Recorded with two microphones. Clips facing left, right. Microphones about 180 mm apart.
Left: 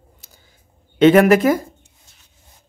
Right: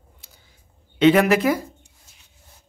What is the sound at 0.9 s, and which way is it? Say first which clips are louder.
Speech: left 5 dB; 50° left (ahead or behind).